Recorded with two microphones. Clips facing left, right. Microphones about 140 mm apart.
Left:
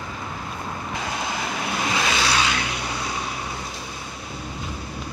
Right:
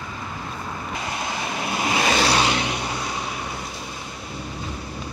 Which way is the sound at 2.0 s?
45° right (ahead or behind).